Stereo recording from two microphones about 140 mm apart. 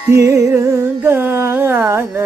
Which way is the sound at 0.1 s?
20° right (ahead or behind).